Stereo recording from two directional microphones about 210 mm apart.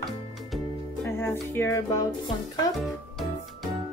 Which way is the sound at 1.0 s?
10° left (ahead or behind).